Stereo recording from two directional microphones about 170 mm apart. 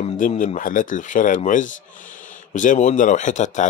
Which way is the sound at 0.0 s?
45° left (ahead or behind).